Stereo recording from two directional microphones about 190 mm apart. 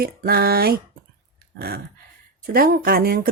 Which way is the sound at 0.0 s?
55° right (ahead or behind).